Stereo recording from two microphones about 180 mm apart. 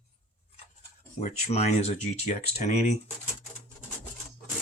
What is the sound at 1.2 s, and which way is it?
Speech, 40° left (ahead or behind).